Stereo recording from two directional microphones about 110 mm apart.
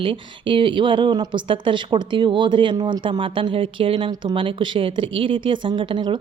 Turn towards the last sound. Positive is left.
turn(degrees=-45)  # may be behind; listen again after turning